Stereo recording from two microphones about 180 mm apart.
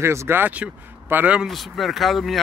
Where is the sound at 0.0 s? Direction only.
15° right (ahead or behind).